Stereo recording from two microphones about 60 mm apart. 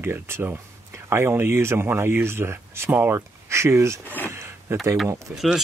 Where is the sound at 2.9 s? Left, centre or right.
Right.